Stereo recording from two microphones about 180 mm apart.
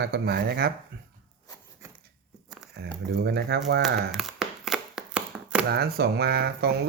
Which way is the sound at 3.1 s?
65° right (ahead or behind).